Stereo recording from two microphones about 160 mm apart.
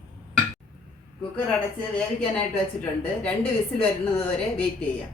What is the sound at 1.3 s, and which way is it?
Speech, 5° left (ahead or behind).